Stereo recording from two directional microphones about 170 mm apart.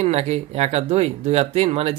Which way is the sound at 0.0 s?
40° right (ahead or behind).